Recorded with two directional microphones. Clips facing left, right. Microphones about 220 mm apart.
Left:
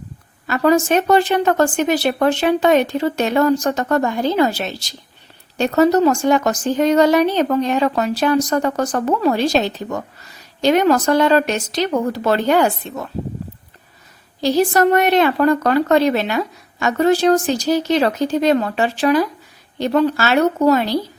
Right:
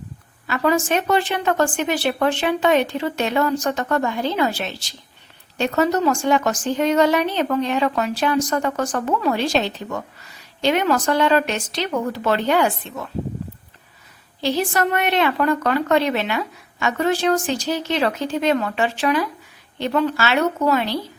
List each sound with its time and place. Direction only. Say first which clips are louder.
0.4 s a woman's voice: left 5 dB; 40° left (ahead or behind)
14.4 s a woman's voice: left 6 dB; 40° left (ahead or behind)